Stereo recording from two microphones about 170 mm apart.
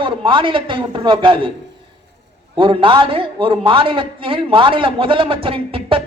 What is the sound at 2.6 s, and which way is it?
A man's voice, 30° right (ahead or behind).